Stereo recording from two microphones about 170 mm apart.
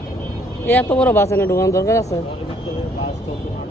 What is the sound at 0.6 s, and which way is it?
Speech, 10° left (ahead or behind).